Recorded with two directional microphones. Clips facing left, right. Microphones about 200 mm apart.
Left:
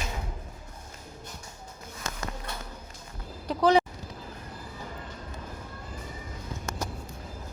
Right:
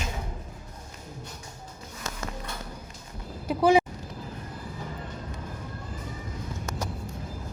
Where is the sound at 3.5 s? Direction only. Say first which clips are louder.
Right 2 dB; 10° right (ahead or behind).